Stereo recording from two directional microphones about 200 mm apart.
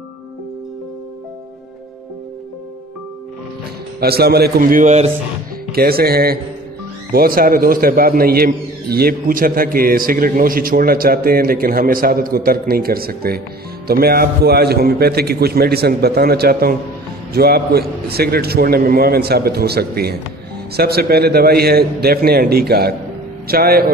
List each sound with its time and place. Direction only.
4.0 s a man's voice: 50° right (ahead or behind); by 5.1 s 35° right (ahead or behind)
5.7 s a man's voice: 50° right (ahead or behind)